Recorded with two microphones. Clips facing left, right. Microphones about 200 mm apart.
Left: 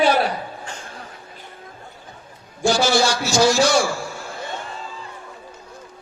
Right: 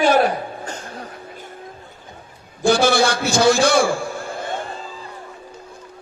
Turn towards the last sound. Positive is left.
turn(degrees=-55)  # may be behind; listen again after turning